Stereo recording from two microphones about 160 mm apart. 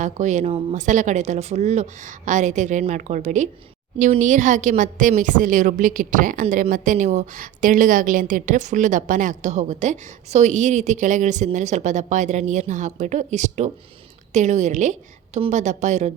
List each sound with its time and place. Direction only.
0.0 s a woman's voice: 50° right (ahead or behind)